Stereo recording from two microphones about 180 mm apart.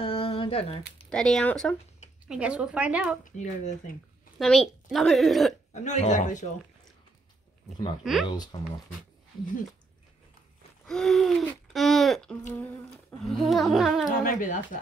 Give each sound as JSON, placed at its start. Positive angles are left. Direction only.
{"t": 0.0, "sound": "a sound", "side_deg": 30}
{"t": 1.1, "sound": "a woman's voice", "side_deg": 5}
{"t": 2.2, "sound": "a woman's voice", "side_deg": -5}
{"t": 3.3, "sound": "speech", "side_deg": 45}
{"t": 4.4, "sound": "a woman's voice", "side_deg": 0}
{"t": 5.7, "sound": "speech", "side_deg": 40}
{"t": 8.0, "sound": "a woman's voice", "side_deg": 0}
{"t": 8.3, "sound": "speech", "side_deg": 25}
{"t": 10.9, "sound": "a woman's voice", "side_deg": 0}
{"t": 14.0, "sound": "speech", "side_deg": 45}